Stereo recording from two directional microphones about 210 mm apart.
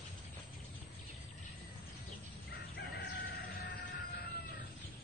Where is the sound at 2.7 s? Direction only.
50° left (ahead or behind).